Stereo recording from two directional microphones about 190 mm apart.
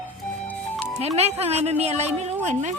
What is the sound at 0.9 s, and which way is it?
Music, 35° right (ahead or behind).